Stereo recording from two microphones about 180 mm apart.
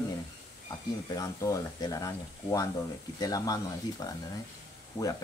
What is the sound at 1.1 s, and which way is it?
Speech, 20° left (ahead or behind).